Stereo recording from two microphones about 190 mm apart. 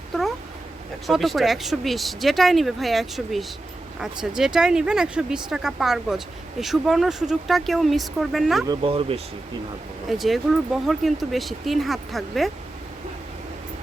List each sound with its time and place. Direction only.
1.0 s speech: centre (ahead or behind)
8.6 s speech: 25° right (ahead or behind)
10.1 s speech: centre (ahead or behind)